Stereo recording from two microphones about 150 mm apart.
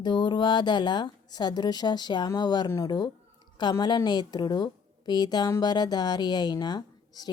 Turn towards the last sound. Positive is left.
turn(degrees=25)  # may be behind; listen again after turning